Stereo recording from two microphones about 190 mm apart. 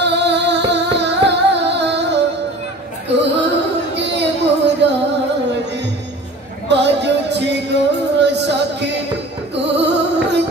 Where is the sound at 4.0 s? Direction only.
65° right (ahead or behind).